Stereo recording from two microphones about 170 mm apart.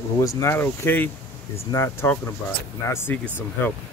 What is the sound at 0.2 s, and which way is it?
Speech, 20° left (ahead or behind).